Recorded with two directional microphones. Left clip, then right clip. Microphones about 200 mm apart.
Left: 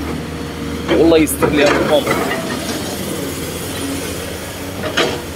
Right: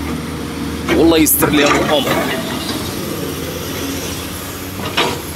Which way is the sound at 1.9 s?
15° right (ahead or behind).